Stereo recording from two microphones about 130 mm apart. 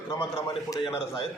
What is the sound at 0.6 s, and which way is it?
Speech, 30° left (ahead or behind).